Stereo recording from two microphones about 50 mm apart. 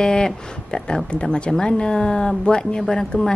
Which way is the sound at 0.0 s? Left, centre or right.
Centre.